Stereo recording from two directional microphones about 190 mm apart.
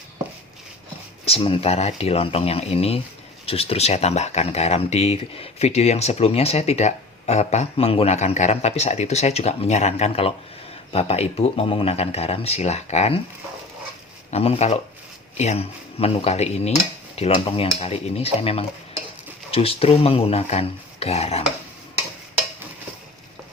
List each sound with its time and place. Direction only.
1.2 s speech: 30° left (ahead or behind)
14.3 s speech: 30° left (ahead or behind)